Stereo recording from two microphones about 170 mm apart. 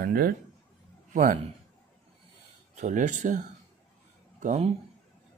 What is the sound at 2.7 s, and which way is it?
Speech, 45° right (ahead or behind).